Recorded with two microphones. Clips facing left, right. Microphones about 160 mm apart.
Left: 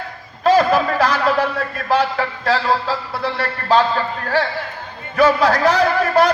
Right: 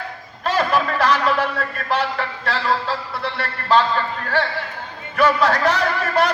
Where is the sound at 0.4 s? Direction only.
40° left (ahead or behind).